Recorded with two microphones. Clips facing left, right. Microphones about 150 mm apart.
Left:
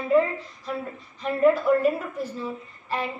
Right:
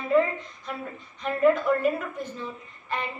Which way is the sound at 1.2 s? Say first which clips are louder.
Left 1 dB; 5° left (ahead or behind).